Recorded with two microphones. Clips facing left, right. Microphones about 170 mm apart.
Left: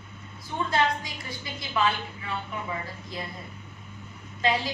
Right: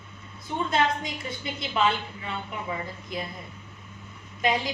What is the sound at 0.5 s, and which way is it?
A woman's voice, 20° right (ahead or behind).